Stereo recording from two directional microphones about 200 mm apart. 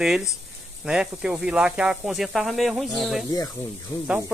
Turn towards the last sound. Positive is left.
turn(degrees=20)  # may be behind; listen again after turning